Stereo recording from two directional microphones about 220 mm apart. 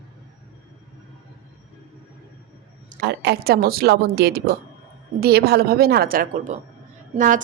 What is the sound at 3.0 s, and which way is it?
A woman's voice, 50° right (ahead or behind).